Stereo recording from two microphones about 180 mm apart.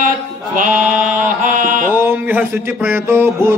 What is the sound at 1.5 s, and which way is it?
Mantra, 45° right (ahead or behind).